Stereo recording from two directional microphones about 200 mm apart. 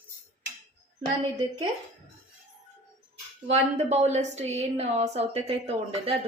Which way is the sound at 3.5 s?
35° right (ahead or behind).